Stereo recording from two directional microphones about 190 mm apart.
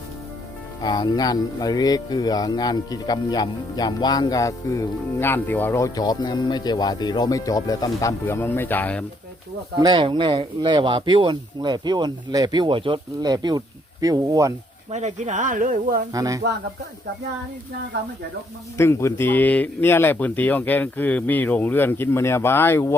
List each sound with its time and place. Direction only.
0.8 s speech: 20° left (ahead or behind)
9.7 s speech: 25° right (ahead or behind)
14.8 s speech: 35° right (ahead or behind)
16.1 s speech: 20° right (ahead or behind)
18.8 s speech: 15° left (ahead or behind)